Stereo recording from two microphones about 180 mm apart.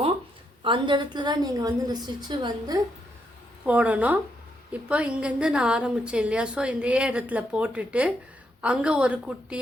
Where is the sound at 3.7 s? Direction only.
10° right (ahead or behind).